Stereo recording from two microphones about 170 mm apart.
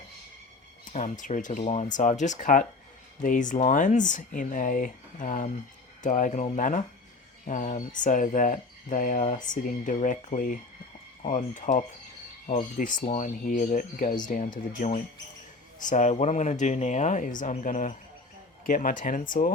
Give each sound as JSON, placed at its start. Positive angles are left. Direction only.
{"t": 0.9, "sound": "speech", "side_deg": 45}